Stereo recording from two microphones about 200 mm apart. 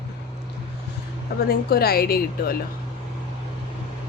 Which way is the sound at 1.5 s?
50° left (ahead or behind).